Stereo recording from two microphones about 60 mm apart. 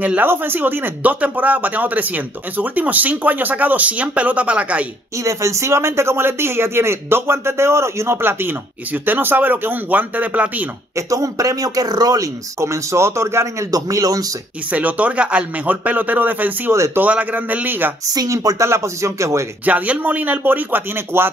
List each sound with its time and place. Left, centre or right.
0.0 s speech: right
5.2 s speech: right
11.0 s speech: right
12.5 s speech: right
13.7 s speech: right
14.7 s speech: right
18.0 s speech: right
18.7 s speech: right
19.6 s speech: right